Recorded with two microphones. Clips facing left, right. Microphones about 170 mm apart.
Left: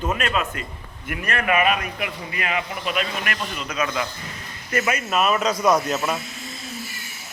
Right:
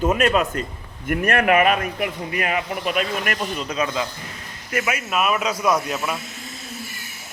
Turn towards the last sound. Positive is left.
turn(degrees=-5)  # may be behind; listen again after turning